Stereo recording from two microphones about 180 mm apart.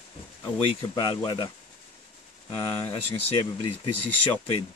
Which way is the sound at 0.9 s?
25° left (ahead or behind).